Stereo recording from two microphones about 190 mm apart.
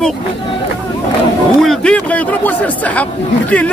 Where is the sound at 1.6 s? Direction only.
5° left (ahead or behind).